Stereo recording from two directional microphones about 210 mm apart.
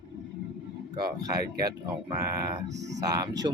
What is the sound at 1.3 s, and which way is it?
Speech, 20° right (ahead or behind).